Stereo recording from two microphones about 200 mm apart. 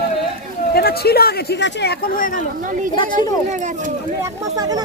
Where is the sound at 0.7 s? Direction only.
50° left (ahead or behind).